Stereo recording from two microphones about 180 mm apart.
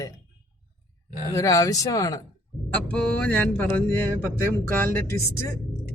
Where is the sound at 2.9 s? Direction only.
5° left (ahead or behind).